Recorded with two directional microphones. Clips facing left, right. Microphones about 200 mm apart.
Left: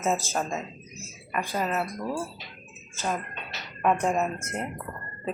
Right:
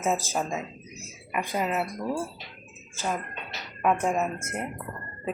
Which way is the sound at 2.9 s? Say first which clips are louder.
Even; 10° right (ahead or behind).